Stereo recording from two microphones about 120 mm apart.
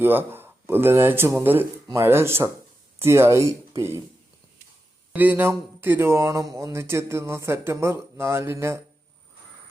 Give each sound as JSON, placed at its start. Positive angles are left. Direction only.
{"t": 0.0, "sound": "speech", "side_deg": -15}
{"t": 5.1, "sound": "speech", "side_deg": -15}